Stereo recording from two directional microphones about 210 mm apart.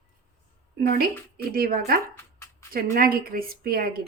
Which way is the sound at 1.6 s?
45° right (ahead or behind).